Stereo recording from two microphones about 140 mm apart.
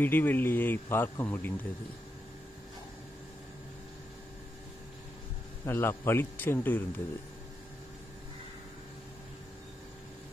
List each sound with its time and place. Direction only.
0.0 s speech: 15° left (ahead or behind)
5.7 s speech: 15° left (ahead or behind)